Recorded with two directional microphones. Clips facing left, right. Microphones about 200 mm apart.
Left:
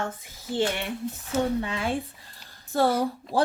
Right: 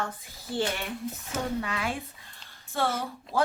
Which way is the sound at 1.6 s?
30° left (ahead or behind).